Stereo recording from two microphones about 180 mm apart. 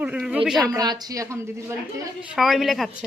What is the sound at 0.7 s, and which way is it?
A woman's voice, 20° right (ahead or behind).